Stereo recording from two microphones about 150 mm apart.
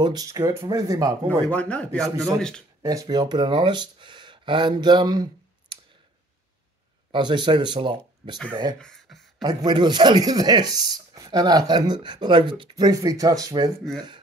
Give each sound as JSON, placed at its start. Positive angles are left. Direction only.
{"t": 0.0, "sound": "speech", "side_deg": -25}
{"t": 1.5, "sound": "speech", "side_deg": 10}
{"t": 2.0, "sound": "speech", "side_deg": -25}
{"t": 2.3, "sound": "speech", "side_deg": 5}
{"t": 2.8, "sound": "speech", "side_deg": -25}
{"t": 7.1, "sound": "speech", "side_deg": -30}
{"t": 8.7, "sound": "beatboxing", "side_deg": 5}
{"t": 9.4, "sound": "speech", "side_deg": -25}